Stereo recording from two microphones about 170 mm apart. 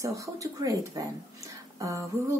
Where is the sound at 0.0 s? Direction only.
20° right (ahead or behind).